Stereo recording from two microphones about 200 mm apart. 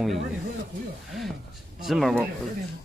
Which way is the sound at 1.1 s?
Centre (ahead or behind).